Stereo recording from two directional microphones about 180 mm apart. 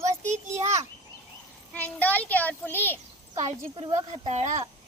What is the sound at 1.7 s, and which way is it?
A child's voice, 10° left (ahead or behind).